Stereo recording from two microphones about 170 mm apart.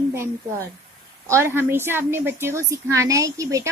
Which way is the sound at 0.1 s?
15° right (ahead or behind).